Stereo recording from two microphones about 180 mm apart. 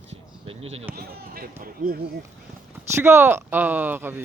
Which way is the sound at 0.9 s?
55° right (ahead or behind).